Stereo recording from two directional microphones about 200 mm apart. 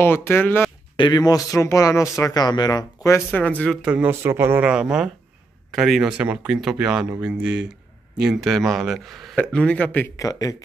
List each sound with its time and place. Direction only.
0.0 s speech: 10° left (ahead or behind)
0.9 s speech: 20° left (ahead or behind); by 3.9 s 5° left (ahead or behind)
3.9 s speech: 10° right (ahead or behind); by 10.5 s 15° left (ahead or behind)